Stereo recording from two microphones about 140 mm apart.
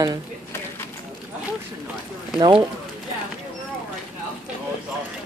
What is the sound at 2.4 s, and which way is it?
Speech, 35° right (ahead or behind).